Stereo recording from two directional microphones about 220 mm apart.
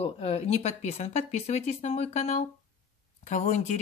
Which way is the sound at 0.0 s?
30° left (ahead or behind).